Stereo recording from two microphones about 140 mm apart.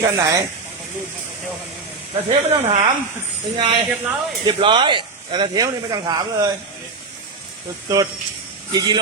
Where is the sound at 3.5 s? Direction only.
35° right (ahead or behind).